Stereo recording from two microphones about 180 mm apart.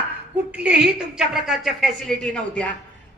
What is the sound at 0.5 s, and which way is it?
A woman's voice, 5° right (ahead or behind).